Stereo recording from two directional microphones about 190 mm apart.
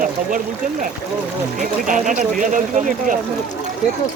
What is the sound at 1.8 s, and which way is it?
Speech, 45° right (ahead or behind).